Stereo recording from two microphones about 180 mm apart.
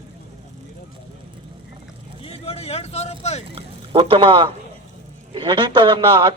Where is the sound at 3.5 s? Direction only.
30° right (ahead or behind).